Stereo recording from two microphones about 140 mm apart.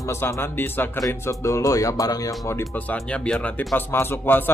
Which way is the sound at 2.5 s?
15° left (ahead or behind).